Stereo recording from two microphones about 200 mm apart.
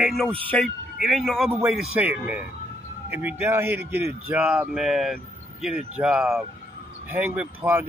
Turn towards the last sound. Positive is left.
turn(degrees=-5)  # may be behind; listen again after turning